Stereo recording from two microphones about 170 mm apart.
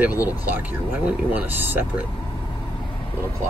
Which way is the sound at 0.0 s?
10° right (ahead or behind).